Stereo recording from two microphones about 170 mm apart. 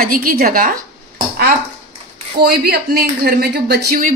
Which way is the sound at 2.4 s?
65° right (ahead or behind).